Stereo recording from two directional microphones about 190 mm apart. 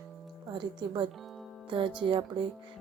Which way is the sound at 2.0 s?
25° right (ahead or behind).